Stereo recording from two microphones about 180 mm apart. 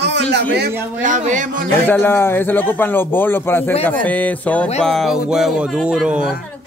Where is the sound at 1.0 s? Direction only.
45° right (ahead or behind).